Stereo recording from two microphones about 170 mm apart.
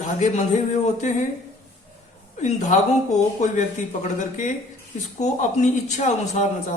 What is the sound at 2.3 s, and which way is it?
Speech, 45° left (ahead or behind).